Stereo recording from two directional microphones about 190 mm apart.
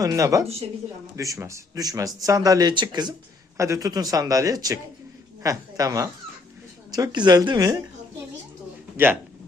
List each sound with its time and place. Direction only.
0.0 s a woman's voice: 15° right (ahead or behind)